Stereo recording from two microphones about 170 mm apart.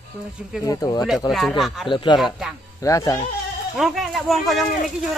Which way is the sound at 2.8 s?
20° left (ahead or behind).